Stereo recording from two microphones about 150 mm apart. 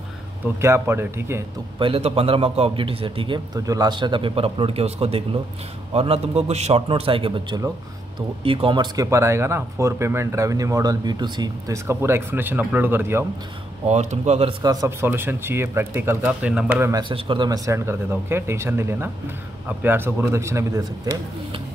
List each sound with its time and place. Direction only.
0.6 s a man's voice: 15° right (ahead or behind)
1.8 s a man's voice: 40° right (ahead or behind)
3.5 s a man's voice: 25° right (ahead or behind)
8.9 s speech: 20° right (ahead or behind)
13.8 s speech: 45° right (ahead or behind)
14.6 s a man's voice: 25° right (ahead or behind)
17.1 s a man's voice: 30° right (ahead or behind)